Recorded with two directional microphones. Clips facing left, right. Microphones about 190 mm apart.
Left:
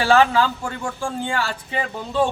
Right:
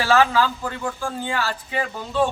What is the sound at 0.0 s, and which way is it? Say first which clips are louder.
A man's voice: left 2 dB; 30° left (ahead or behind).